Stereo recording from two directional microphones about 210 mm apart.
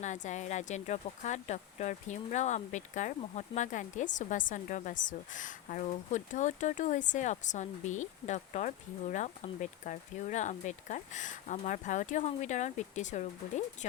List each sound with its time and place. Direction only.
0.0 s speech: 35° left (ahead or behind)